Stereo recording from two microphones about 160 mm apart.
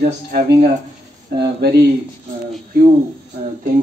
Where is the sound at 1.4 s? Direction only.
90° right.